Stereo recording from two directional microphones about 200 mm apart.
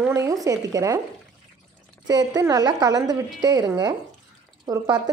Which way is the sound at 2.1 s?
20° right (ahead or behind).